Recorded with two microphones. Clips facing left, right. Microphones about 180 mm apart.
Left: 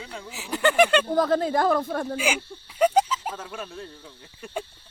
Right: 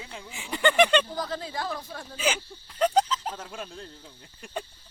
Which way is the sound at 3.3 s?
25° right (ahead or behind).